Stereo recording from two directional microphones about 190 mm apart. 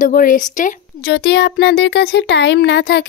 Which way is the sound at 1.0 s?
65° left (ahead or behind).